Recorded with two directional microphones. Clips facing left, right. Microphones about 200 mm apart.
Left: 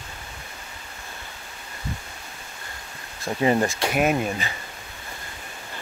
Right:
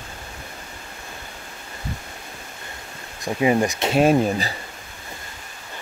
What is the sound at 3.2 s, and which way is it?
Speech, 15° right (ahead or behind).